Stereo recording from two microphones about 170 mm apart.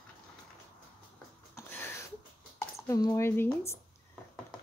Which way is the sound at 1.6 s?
15° left (ahead or behind).